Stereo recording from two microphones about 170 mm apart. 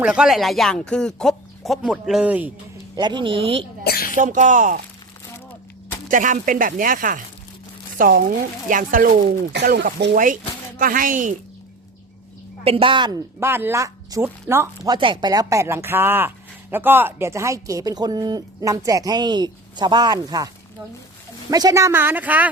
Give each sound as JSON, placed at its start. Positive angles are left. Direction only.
{"t": 0.0, "sound": "speech", "side_deg": -5}
{"t": 2.9, "sound": "speech", "side_deg": -25}
{"t": 3.8, "sound": "a sound", "side_deg": 60}
{"t": 4.2, "sound": "speech", "side_deg": -45}
{"t": 6.1, "sound": "speech", "side_deg": -50}
{"t": 9.5, "sound": "speech", "side_deg": -90}
{"t": 10.8, "sound": "speech", "side_deg": -55}
{"t": 12.6, "sound": "a woman's voice", "side_deg": -30}
{"t": 13.4, "sound": "speech", "side_deg": -15}
{"t": 14.9, "sound": "speech", "side_deg": -30}
{"t": 21.5, "sound": "speech", "side_deg": -20}